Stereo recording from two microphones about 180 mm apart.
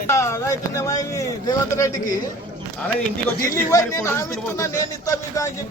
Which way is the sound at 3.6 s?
15° left (ahead or behind).